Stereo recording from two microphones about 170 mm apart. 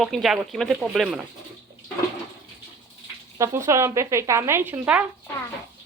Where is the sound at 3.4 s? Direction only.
15° right (ahead or behind).